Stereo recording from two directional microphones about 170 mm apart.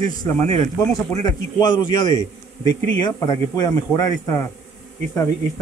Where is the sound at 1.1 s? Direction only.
25° left (ahead or behind).